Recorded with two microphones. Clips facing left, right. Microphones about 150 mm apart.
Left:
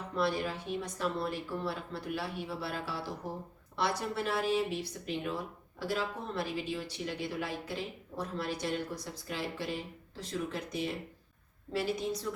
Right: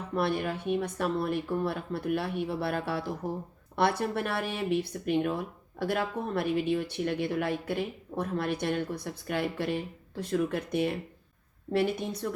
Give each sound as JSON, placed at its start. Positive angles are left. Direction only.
{"t": 0.2, "sound": "speech", "side_deg": -60}